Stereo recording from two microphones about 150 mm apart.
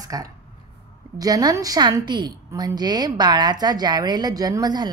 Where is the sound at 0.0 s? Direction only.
25° right (ahead or behind).